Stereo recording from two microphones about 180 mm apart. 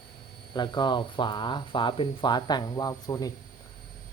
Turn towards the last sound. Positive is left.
turn(degrees=20)  # may be behind; listen again after turning